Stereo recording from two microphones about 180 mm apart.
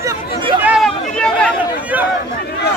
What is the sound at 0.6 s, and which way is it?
Chatter, centre (ahead or behind).